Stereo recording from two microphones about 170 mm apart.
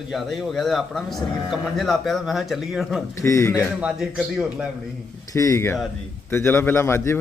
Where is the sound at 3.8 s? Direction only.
5° right (ahead or behind).